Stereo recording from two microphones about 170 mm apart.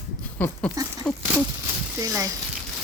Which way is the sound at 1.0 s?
5° left (ahead or behind).